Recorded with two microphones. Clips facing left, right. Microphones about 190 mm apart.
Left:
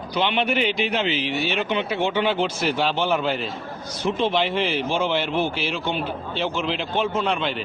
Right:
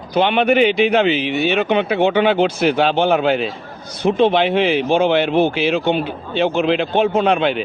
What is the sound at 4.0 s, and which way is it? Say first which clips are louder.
Speech: right 8 dB; 60° right (ahead or behind).